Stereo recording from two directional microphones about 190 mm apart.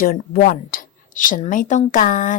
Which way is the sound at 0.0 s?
50° left (ahead or behind).